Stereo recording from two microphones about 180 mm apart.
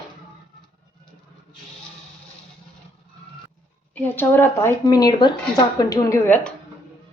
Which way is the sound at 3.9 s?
10° left (ahead or behind).